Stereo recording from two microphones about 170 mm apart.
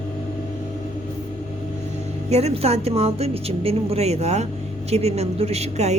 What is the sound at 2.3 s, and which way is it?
A woman's voice, 40° right (ahead or behind).